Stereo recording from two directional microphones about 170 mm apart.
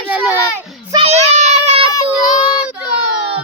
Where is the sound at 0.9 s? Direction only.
35° right (ahead or behind).